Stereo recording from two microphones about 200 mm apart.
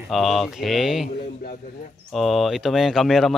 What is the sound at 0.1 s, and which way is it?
Speech, centre (ahead or behind).